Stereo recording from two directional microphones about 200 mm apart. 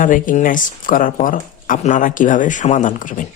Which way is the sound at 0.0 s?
40° left (ahead or behind).